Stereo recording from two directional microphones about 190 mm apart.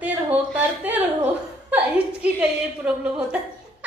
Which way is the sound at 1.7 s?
5° right (ahead or behind).